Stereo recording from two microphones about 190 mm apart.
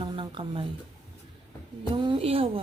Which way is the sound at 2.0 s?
25° right (ahead or behind).